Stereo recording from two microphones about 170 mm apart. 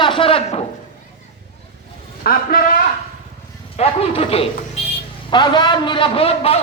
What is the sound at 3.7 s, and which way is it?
A man's voice, 35° left (ahead or behind).